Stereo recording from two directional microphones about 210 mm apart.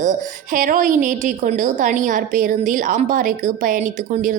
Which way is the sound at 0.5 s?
40° right (ahead or behind).